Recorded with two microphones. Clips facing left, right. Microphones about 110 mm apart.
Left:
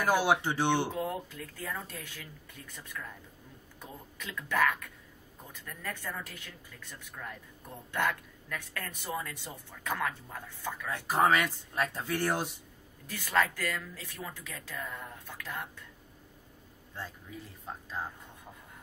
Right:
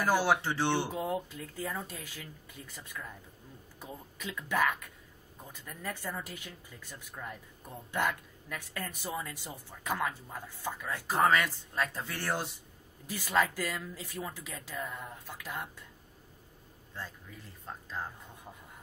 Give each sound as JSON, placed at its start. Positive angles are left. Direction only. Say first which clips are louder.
{"t": 0.1, "sound": "speech", "louder": "left 1 dB", "side_deg": 15}
{"t": 0.9, "sound": "speech", "louder": "right 1 dB", "side_deg": -15}
{"t": 10.9, "sound": "speech", "louder": "left 1 dB", "side_deg": 10}
{"t": 13.0, "sound": "speech", "louder": "even", "side_deg": -10}
{"t": 17.6, "sound": "speech", "louder": "left 1 dB", "side_deg": 5}